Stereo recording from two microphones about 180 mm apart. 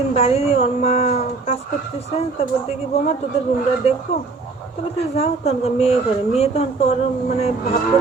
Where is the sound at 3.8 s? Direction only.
35° left (ahead or behind).